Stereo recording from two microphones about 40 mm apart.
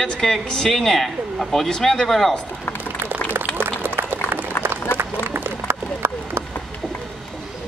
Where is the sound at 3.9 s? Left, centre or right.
Right.